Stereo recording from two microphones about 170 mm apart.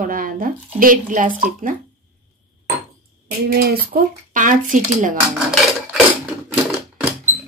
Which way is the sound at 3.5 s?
65° right (ahead or behind).